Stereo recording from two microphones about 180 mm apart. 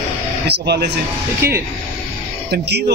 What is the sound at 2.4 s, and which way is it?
Speech, 65° right (ahead or behind).